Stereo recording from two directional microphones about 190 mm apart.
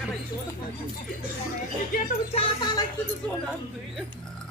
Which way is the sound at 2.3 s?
25° left (ahead or behind).